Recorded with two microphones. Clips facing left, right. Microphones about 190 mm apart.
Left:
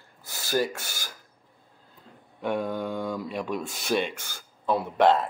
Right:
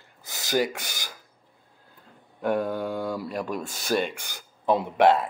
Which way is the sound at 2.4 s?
5° right (ahead or behind).